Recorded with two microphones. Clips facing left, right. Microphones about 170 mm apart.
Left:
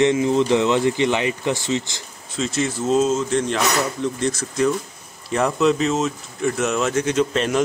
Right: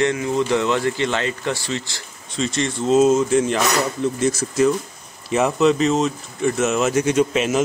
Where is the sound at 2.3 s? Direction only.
5° left (ahead or behind).